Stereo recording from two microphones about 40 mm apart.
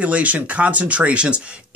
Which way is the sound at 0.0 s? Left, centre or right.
Right.